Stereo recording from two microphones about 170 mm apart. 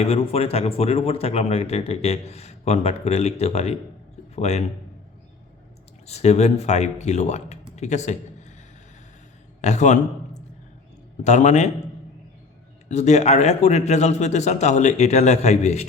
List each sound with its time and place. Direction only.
0.0 s a man's voice: 35° left (ahead or behind)
6.1 s speech: 40° left (ahead or behind)
9.6 s a man's voice: 45° left (ahead or behind)
12.9 s a man's voice: 40° left (ahead or behind)